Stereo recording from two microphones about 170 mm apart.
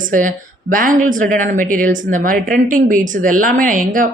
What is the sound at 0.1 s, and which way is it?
Speech, 50° right (ahead or behind).